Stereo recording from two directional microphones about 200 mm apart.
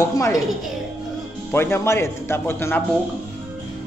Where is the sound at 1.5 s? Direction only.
10° left (ahead or behind).